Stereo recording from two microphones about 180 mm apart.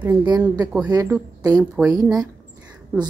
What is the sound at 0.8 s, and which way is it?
Speech, 15° right (ahead or behind).